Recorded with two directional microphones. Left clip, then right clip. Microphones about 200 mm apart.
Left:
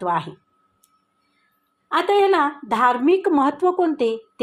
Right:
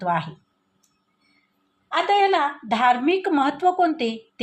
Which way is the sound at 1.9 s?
40° left (ahead or behind).